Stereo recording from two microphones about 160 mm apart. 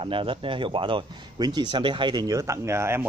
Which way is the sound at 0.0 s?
30° right (ahead or behind).